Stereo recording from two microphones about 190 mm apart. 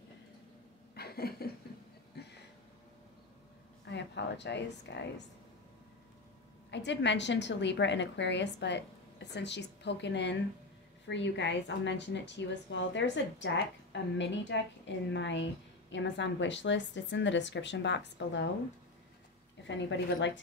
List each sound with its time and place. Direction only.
0.9 s a sound: 55° left (ahead or behind)
3.8 s speech: 65° left (ahead or behind)
6.7 s a woman's voice: 65° left (ahead or behind)
19.7 s a woman's voice: 70° left (ahead or behind)